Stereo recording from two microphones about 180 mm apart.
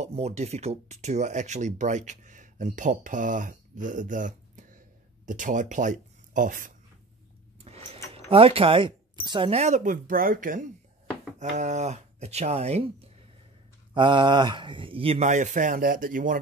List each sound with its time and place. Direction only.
0.0 s speech: 35° right (ahead or behind)
7.6 s a sound: 35° right (ahead or behind)
8.1 s speech: 30° right (ahead or behind)
13.9 s speech: 25° right (ahead or behind); by 16.3 s 50° right (ahead or behind)